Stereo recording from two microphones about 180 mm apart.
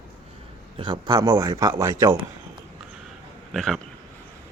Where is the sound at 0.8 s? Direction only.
25° right (ahead or behind).